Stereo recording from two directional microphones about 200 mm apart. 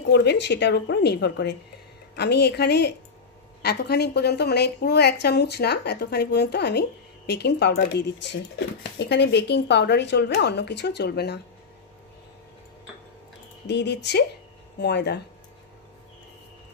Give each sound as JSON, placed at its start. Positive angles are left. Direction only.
{"t": 0.1, "sound": "a woman's voice", "side_deg": 55}
{"t": 13.7, "sound": "a woman's voice", "side_deg": 60}